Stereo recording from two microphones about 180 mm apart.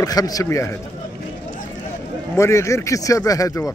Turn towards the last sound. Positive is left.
turn(degrees=15)  # may be behind; listen again after turning